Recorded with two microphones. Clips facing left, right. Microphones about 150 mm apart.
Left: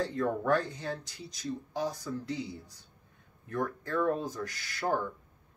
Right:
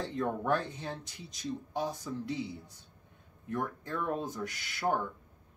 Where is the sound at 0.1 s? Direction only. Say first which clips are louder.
Left 2 dB; 20° right (ahead or behind).